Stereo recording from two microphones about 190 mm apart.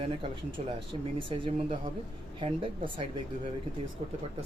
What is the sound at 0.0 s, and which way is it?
Speech, 30° right (ahead or behind).